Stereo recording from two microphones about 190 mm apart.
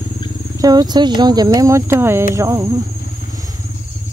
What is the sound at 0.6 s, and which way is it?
Speech, 20° right (ahead or behind).